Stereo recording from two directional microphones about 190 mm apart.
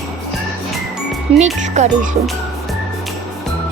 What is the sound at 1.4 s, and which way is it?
Speech, 35° right (ahead or behind).